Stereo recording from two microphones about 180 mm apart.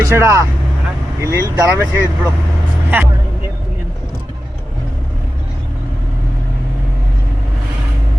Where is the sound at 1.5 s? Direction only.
15° right (ahead or behind).